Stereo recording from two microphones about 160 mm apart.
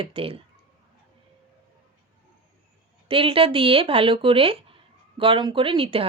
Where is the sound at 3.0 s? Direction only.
35° right (ahead or behind).